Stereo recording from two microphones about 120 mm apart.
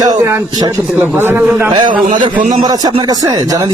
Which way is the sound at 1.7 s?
45° right (ahead or behind).